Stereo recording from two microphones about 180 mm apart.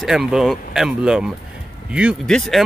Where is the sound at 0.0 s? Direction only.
Centre (ahead or behind).